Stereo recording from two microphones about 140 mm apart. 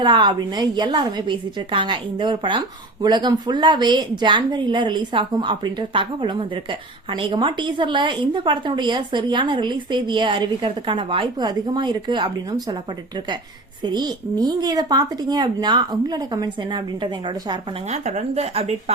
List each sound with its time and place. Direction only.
0.0 s speech: 35° right (ahead or behind)
13.8 s speech: 30° right (ahead or behind)
17.8 s speech: 55° right (ahead or behind)